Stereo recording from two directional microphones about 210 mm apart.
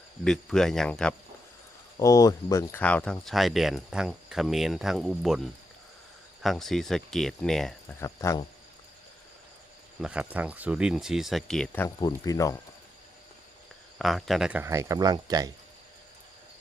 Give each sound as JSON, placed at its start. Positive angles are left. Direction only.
{"t": 0.3, "sound": "speech", "side_deg": 0}
{"t": 2.0, "sound": "speech", "side_deg": 15}
{"t": 6.4, "sound": "speech", "side_deg": 0}
{"t": 7.9, "sound": "speech", "side_deg": 15}
{"t": 10.0, "sound": "speech", "side_deg": -5}
{"t": 11.9, "sound": "speech", "side_deg": 20}
{"t": 14.0, "sound": "speech", "side_deg": 0}